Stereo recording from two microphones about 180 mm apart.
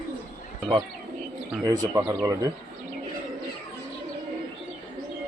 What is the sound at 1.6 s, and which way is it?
Speech, 20° right (ahead or behind).